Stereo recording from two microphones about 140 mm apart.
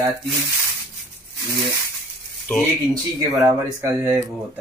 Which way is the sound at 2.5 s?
10° left (ahead or behind).